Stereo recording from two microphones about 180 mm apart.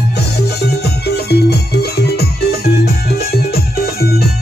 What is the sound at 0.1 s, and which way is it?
Music, 65° left (ahead or behind).